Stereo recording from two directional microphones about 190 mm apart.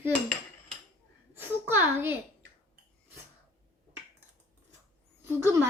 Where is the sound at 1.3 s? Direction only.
10° right (ahead or behind).